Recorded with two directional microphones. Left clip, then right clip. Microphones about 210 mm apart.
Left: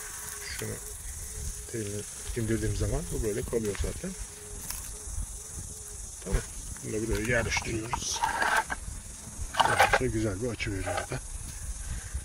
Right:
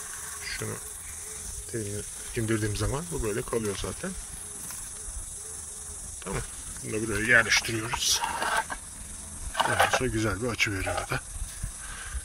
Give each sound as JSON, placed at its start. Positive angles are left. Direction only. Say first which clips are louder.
{"t": 1.7, "sound": "speech", "louder": "right 1 dB", "side_deg": -5}
{"t": 6.9, "sound": "speech", "louder": "right 6 dB", "side_deg": 5}
{"t": 8.3, "sound": "a sound", "louder": "left 1 dB", "side_deg": 20}
{"t": 9.6, "sound": "speech", "louder": "left 1 dB", "side_deg": 20}
{"t": 10.0, "sound": "speech", "louder": "right 2 dB", "side_deg": 0}